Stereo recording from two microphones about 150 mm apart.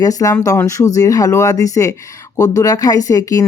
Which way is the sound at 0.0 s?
25° left (ahead or behind).